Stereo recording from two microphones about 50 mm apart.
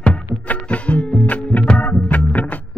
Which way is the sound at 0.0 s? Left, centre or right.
Left.